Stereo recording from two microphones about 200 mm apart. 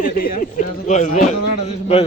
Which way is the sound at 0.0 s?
45° left (ahead or behind).